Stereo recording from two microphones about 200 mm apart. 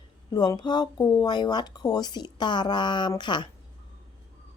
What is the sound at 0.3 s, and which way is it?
A woman's voice, 20° left (ahead or behind).